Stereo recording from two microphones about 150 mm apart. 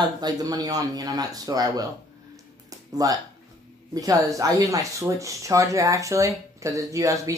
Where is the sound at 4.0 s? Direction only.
25° right (ahead or behind).